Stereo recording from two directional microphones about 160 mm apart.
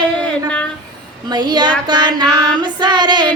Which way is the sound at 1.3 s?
25° right (ahead or behind).